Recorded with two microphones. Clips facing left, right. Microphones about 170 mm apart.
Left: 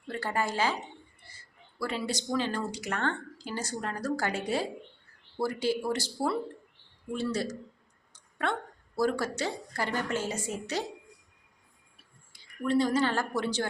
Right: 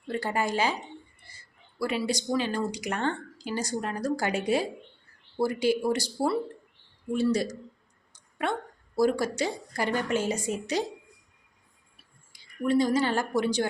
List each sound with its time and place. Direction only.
0.1 s speech: 15° right (ahead or behind)
1.8 s speech: 10° right (ahead or behind)
8.1 s a sound: 10° right (ahead or behind)
9.0 s speech: 15° right (ahead or behind)
12.3 s speech: 15° right (ahead or behind)